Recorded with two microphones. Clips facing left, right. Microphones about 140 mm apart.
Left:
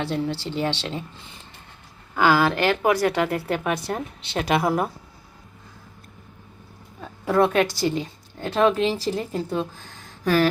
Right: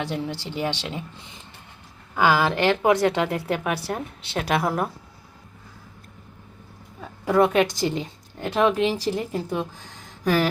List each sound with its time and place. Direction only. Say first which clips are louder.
0.0 s speech: left 3 dB; 15° right (ahead or behind); by 4.9 s 5° left (ahead or behind)
7.3 s a woman's voice: right 1 dB; 15° right (ahead or behind)